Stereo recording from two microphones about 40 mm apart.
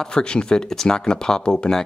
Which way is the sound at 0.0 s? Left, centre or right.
Left.